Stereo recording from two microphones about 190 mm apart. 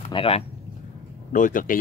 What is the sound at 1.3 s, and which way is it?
Speech, 45° left (ahead or behind).